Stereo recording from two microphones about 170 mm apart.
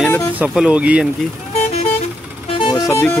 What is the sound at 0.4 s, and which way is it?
Speech, 5° right (ahead or behind).